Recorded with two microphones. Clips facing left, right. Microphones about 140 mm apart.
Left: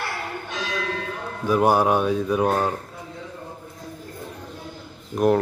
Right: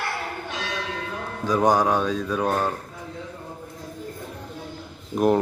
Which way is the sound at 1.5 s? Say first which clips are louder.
Left 1 dB; 10° left (ahead or behind).